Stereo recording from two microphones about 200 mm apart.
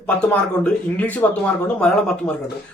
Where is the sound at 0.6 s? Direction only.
10° left (ahead or behind).